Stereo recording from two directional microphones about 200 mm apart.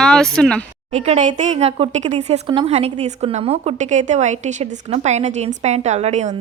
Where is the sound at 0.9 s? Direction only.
35° right (ahead or behind).